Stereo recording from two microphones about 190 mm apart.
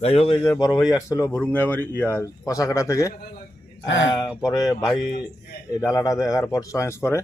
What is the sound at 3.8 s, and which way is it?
Speech, 75° left (ahead or behind).